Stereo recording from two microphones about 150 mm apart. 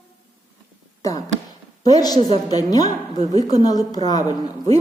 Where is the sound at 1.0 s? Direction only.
25° left (ahead or behind).